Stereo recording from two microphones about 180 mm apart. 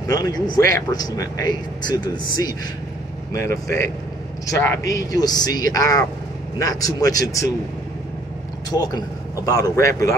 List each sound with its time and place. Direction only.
0.0 s speech: 20° left (ahead or behind)
8.6 s a man's voice: 20° left (ahead or behind)